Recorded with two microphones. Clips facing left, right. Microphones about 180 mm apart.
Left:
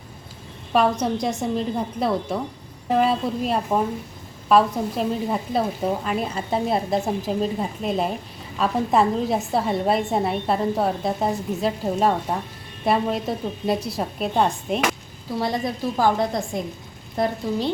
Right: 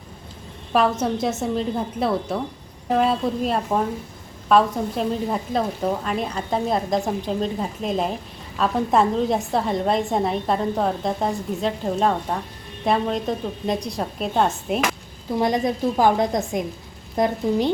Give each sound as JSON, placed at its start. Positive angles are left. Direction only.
{"t": 0.7, "sound": "a woman's voice", "side_deg": 0}
{"t": 15.4, "sound": "a woman's voice", "side_deg": -20}